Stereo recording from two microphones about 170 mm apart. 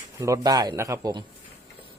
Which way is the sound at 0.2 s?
20° right (ahead or behind).